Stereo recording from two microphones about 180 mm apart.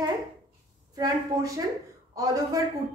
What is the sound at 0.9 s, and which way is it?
A woman's voice, 20° right (ahead or behind).